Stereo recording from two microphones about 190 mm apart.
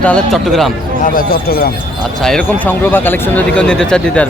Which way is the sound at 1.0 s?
50° left (ahead or behind).